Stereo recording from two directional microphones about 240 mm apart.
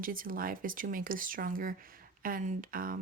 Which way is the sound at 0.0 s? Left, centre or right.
Right.